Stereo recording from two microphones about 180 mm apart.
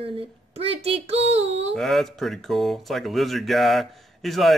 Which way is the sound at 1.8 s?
Centre (ahead or behind).